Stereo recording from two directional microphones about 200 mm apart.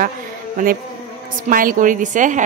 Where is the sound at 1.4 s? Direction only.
45° right (ahead or behind).